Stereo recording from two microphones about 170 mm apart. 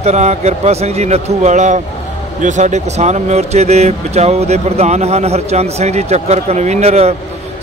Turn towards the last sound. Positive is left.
turn(degrees=-35)  # may be behind; listen again after turning